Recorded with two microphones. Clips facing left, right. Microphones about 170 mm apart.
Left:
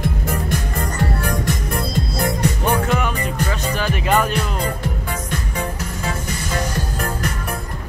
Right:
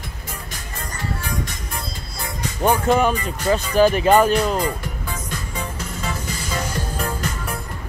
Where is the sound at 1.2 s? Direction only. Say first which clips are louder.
Left 6 dB; 65° left (ahead or behind).